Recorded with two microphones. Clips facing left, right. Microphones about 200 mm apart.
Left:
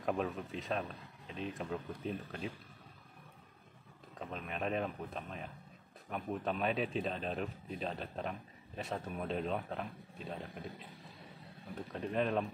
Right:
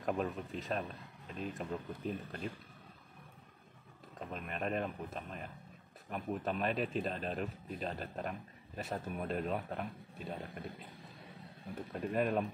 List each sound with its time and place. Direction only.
0.0 s speech: centre (ahead or behind)
4.2 s speech: centre (ahead or behind)
11.9 s speech: 5° right (ahead or behind)